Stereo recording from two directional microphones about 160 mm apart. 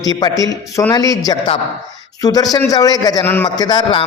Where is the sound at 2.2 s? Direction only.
25° left (ahead or behind).